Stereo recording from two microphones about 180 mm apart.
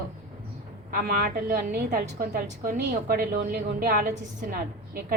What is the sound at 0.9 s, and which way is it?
A woman's voice, 50° right (ahead or behind).